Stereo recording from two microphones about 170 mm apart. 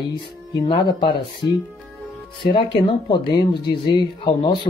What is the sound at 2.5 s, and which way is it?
Speech, 30° left (ahead or behind).